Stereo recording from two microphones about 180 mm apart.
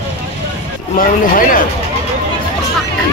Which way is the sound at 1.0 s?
50° left (ahead or behind).